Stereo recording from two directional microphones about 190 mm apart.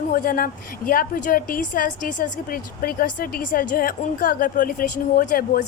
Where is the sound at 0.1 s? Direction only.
50° left (ahead or behind).